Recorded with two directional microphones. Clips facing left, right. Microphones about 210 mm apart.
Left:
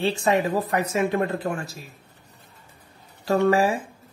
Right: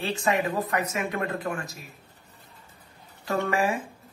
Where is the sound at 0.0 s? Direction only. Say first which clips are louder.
Left 4 dB; 30° left (ahead or behind).